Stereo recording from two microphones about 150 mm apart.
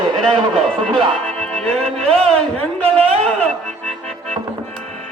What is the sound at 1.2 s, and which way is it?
Music, 5° left (ahead or behind).